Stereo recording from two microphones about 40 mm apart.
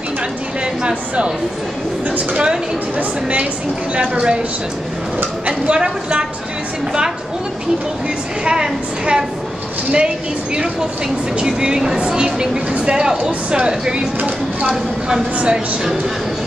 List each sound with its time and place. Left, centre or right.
0.8 s a woman's voice: right
3.0 s a woman's voice: right
5.7 s a woman's voice: right
8.5 s a woman's voice: right
14.2 s speech: right
15.4 s a woman's voice: centre